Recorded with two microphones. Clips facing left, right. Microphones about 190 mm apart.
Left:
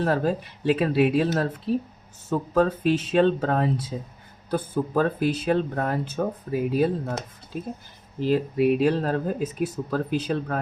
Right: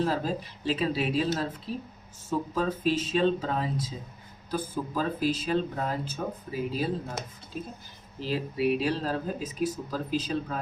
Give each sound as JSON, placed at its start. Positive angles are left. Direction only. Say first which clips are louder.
{"t": 0.0, "sound": "speech", "louder": "left 5 dB", "side_deg": 60}
{"t": 2.6, "sound": "speech", "louder": "left 7 dB", "side_deg": 65}
{"t": 8.2, "sound": "speech", "louder": "left 7 dB", "side_deg": 50}